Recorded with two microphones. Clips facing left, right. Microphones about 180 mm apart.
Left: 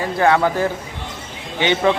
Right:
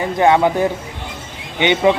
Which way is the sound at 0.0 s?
20° right (ahead or behind).